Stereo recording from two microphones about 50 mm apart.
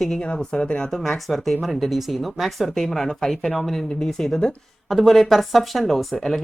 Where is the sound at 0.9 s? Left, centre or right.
Centre.